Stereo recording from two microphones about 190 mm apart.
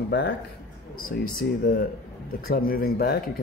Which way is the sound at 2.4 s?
50° left (ahead or behind).